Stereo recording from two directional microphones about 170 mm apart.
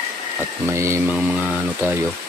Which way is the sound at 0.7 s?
15° right (ahead or behind).